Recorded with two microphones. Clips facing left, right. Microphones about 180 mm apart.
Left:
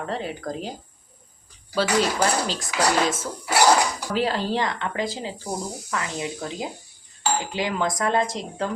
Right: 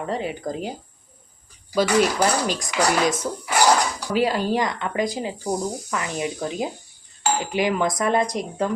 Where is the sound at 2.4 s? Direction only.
15° right (ahead or behind).